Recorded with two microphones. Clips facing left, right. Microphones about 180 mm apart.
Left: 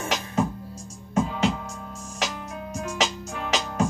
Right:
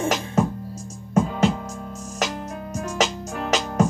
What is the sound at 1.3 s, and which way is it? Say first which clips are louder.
Music: right 4 dB; 45° right (ahead or behind).